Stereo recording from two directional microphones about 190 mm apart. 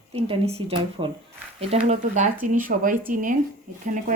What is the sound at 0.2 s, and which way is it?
A woman's voice, 30° right (ahead or behind).